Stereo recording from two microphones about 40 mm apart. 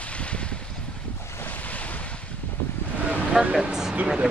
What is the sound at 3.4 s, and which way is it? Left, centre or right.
Vehicle, centre.